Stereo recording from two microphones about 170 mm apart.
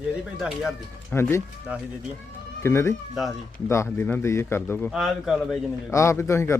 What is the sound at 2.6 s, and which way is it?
A man's voice, 15° left (ahead or behind).